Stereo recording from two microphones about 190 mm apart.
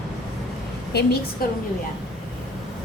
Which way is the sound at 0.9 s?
60° left (ahead or behind).